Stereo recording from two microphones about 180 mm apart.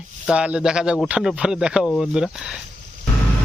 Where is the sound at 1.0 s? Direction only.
5° right (ahead or behind).